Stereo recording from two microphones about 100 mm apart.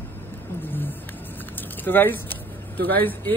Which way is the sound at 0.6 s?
20° left (ahead or behind).